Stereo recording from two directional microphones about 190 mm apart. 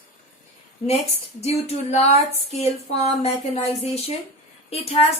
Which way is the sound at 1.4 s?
35° left (ahead or behind).